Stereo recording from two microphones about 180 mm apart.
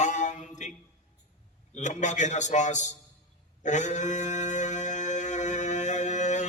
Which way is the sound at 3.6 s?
40° left (ahead or behind).